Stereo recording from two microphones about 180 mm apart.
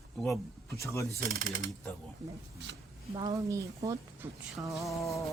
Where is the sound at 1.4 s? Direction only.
45° right (ahead or behind).